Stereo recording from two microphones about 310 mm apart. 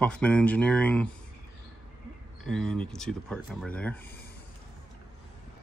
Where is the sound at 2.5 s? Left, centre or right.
Centre.